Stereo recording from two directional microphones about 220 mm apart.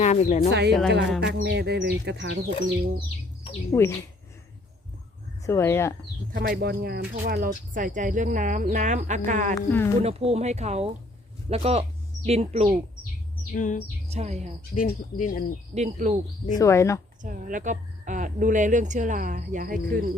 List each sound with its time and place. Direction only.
0.0 s a woman's voice: 30° left (ahead or behind)
1.2 s speech: 50° right (ahead or behind)
3.7 s speech: 10° left (ahead or behind)
5.5 s speech: 10° left (ahead or behind)
6.3 s speech: 45° right (ahead or behind)
9.6 s speech: 10° left (ahead or behind)
10.0 s speech: 30° right (ahead or behind)
13.5 s speech: 35° left (ahead or behind)
14.1 s speech: 30° right (ahead or behind)
14.6 s speech: 40° left (ahead or behind)
15.7 s speech: 30° right (ahead or behind)
16.6 s speech: 15° left (ahead or behind)
17.2 s speech: 35° right (ahead or behind)